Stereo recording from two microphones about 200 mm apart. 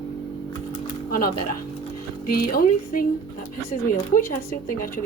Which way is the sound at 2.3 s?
45° left (ahead or behind).